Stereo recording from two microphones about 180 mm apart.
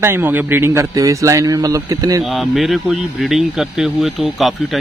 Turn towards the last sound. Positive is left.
turn(degrees=0)  # may be behind; listen again after turning